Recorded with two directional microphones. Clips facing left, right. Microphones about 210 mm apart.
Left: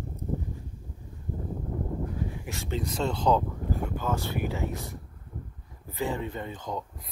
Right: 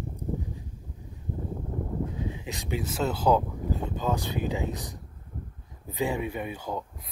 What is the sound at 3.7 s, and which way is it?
Speech, 20° right (ahead or behind).